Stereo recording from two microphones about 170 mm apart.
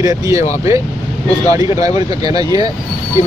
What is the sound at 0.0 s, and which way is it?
Speech, 20° right (ahead or behind).